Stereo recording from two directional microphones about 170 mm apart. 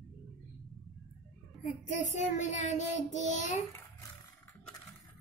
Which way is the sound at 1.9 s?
45° left (ahead or behind).